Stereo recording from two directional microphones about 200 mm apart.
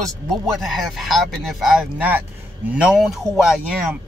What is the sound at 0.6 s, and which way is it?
Speech, centre (ahead or behind).